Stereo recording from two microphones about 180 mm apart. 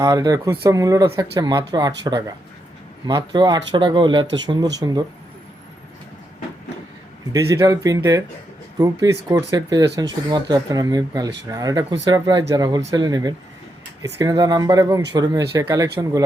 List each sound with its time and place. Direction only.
0.0 s speech: 20° right (ahead or behind)
7.3 s speech: 15° right (ahead or behind)